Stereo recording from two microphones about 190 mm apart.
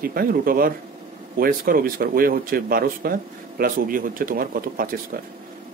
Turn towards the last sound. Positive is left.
turn(degrees=-50)  # may be behind; listen again after turning